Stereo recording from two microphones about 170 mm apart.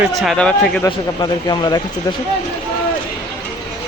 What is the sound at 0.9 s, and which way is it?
Speech, 25° left (ahead or behind).